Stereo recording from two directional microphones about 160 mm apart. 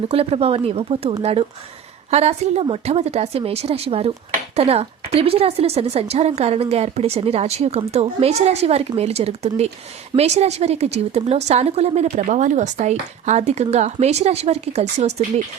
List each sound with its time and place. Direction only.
0.1 s a woman's voice: 40° right (ahead or behind)